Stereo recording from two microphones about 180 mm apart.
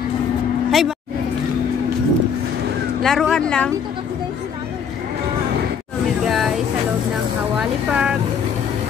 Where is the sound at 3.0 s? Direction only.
5° left (ahead or behind).